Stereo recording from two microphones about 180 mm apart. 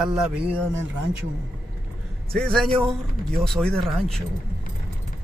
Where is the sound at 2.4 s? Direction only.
5° left (ahead or behind).